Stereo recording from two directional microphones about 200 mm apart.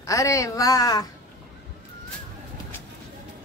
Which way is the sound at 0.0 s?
15° left (ahead or behind).